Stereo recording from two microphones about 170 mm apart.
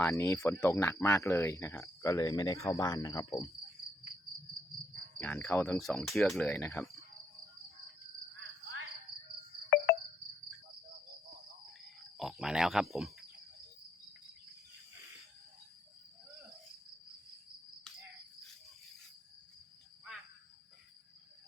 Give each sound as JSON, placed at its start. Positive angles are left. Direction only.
{"t": 0.0, "sound": "speech", "side_deg": 15}
{"t": 5.2, "sound": "speech", "side_deg": 10}
{"t": 5.8, "sound": "speech", "side_deg": 0}
{"t": 9.6, "sound": "music", "side_deg": 65}
{"t": 12.1, "sound": "speech", "side_deg": 0}